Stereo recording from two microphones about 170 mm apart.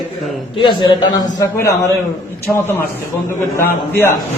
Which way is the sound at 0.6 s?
25° left (ahead or behind).